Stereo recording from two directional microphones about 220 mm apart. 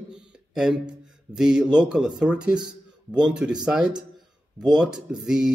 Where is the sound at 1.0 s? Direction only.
5° right (ahead or behind).